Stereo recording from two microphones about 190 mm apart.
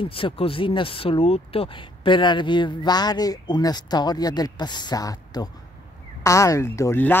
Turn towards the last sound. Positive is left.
turn(degrees=15)  # may be behind; listen again after turning